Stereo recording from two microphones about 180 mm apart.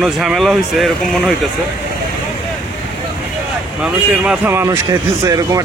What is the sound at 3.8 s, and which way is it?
Speech, 10° right (ahead or behind).